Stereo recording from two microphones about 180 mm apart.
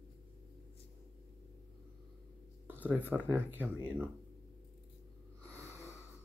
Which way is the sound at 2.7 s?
10° right (ahead or behind).